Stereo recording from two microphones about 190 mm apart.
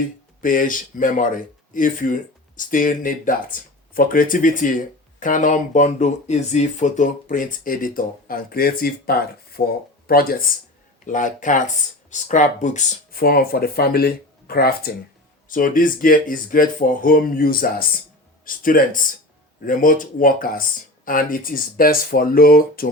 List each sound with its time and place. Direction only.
0.0 s speech: 45° left (ahead or behind)